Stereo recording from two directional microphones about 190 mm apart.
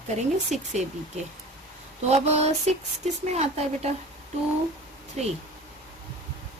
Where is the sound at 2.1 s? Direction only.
35° right (ahead or behind).